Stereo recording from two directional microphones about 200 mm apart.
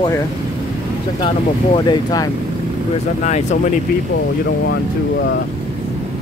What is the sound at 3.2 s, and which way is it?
Speech, 35° left (ahead or behind).